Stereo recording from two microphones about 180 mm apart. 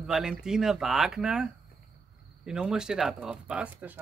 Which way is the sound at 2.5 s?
5° right (ahead or behind).